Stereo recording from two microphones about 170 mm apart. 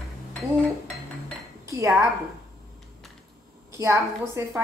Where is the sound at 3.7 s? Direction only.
15° right (ahead or behind).